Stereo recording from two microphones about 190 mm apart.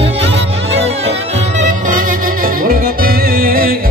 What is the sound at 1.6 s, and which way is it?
Music, 45° right (ahead or behind).